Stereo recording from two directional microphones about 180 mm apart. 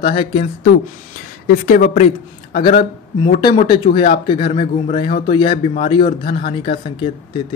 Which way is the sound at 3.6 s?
30° left (ahead or behind).